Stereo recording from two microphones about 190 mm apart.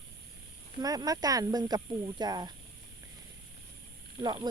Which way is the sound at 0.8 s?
20° right (ahead or behind).